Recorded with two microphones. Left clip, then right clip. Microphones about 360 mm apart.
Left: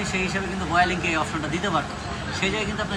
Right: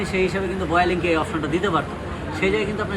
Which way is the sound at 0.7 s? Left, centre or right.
Centre.